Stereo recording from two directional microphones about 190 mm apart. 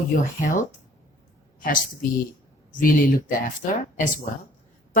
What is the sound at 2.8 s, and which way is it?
Speech, 50° left (ahead or behind).